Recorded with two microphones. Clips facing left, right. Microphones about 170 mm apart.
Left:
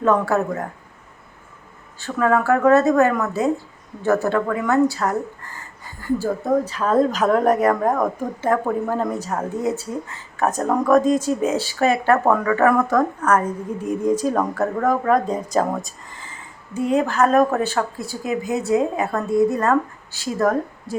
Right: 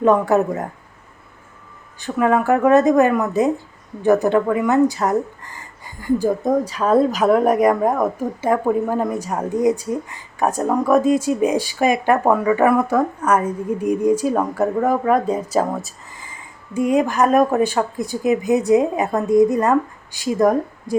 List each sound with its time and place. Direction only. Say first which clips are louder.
0.0 s speech: right 3 dB; 15° right (ahead or behind)
2.0 s speech: right 2 dB; 15° right (ahead or behind)